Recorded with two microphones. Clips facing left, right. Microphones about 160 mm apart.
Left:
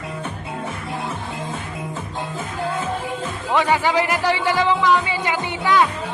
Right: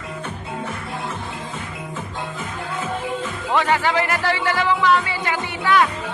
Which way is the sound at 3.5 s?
15° left (ahead or behind).